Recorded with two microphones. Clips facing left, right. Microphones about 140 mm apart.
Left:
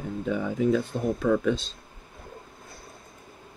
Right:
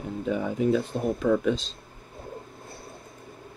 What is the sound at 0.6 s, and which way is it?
Speech, 25° right (ahead or behind).